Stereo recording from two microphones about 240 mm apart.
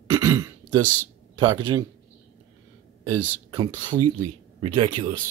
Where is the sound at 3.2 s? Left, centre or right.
Centre.